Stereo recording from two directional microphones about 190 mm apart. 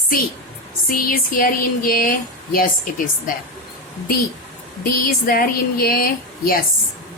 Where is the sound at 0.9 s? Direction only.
50° left (ahead or behind).